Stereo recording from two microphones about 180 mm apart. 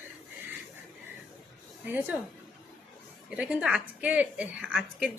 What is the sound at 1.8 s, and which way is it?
Speech, 10° right (ahead or behind).